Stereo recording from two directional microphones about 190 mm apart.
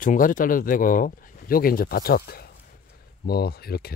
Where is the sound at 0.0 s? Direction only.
45° left (ahead or behind).